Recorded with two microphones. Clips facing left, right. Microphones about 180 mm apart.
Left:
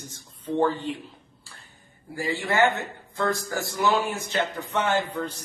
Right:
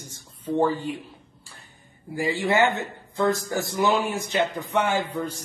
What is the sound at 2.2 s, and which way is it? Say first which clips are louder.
Speech: right 2 dB; 15° right (ahead or behind).